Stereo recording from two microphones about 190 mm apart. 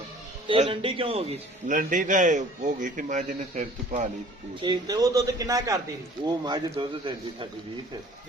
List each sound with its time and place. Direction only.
0.4 s a man's voice: 25° right (ahead or behind)
4.6 s a man's voice: 20° right (ahead or behind)